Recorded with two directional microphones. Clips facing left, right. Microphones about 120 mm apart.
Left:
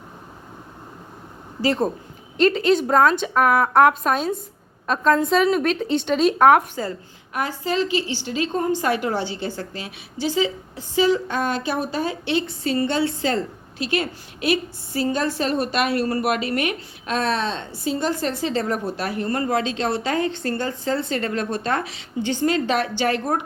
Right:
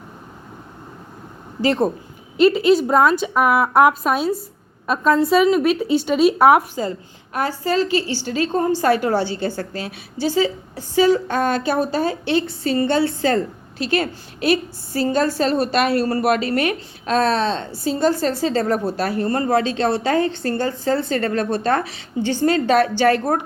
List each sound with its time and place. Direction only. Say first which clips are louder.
2.4 s a woman's voice: right 4 dB; 10° right (ahead or behind)
7.3 s a woman's voice: right 3 dB; 40° right (ahead or behind)